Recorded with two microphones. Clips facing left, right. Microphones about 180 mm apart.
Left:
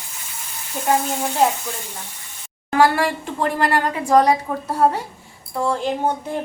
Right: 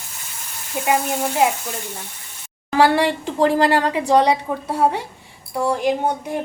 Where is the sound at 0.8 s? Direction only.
15° right (ahead or behind).